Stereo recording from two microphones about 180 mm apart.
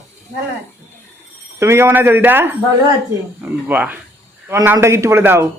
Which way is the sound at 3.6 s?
10° right (ahead or behind).